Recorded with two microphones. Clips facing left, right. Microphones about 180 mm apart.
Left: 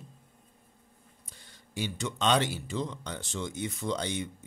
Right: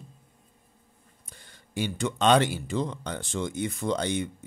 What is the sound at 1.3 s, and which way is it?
Speech, 55° right (ahead or behind).